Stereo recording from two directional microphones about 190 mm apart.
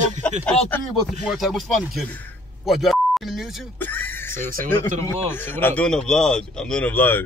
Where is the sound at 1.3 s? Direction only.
Centre (ahead or behind).